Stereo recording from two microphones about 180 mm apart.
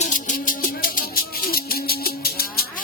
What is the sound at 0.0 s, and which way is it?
Music, 45° left (ahead or behind).